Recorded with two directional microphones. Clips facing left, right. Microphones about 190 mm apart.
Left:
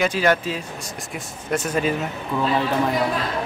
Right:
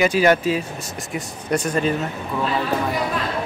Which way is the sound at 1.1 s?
5° left (ahead or behind).